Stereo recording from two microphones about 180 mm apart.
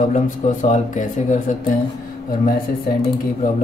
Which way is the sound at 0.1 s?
45° left (ahead or behind).